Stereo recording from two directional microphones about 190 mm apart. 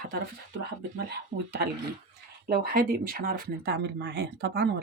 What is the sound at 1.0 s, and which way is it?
Speech, 60° right (ahead or behind).